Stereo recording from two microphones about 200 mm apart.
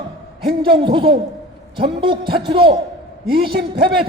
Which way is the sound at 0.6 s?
25° right (ahead or behind).